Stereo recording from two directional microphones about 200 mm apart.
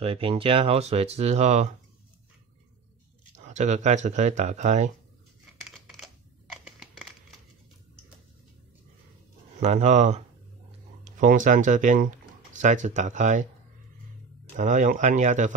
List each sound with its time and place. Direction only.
0.0 s speech: 30° right (ahead or behind)
3.3 s speech: 35° right (ahead or behind)
6.5 s crumpling: centre (ahead or behind)
9.6 s speech: 35° right (ahead or behind)
14.6 s speech: 40° right (ahead or behind)